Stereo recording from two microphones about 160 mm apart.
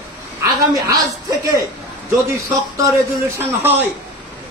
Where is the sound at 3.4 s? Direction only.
10° right (ahead or behind).